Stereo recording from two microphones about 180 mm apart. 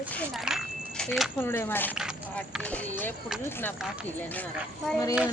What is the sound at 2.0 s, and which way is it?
Speech, centre (ahead or behind).